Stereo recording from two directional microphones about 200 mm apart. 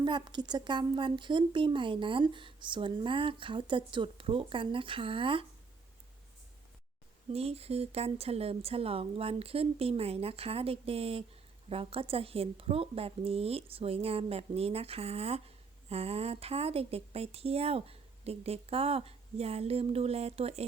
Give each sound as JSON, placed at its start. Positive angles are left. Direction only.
{"t": 0.0, "sound": "speech", "side_deg": -25}
{"t": 7.3, "sound": "speech", "side_deg": -30}